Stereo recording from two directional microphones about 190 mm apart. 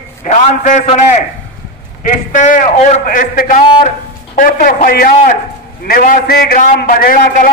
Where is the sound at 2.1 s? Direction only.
40° left (ahead or behind).